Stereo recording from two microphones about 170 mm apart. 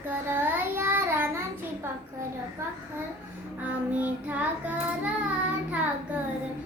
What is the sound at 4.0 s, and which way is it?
Child singing, 10° right (ahead or behind).